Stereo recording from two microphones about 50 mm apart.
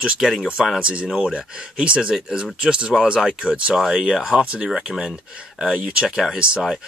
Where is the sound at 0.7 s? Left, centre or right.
Right.